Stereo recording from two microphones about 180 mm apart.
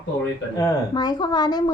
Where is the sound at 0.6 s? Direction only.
20° left (ahead or behind).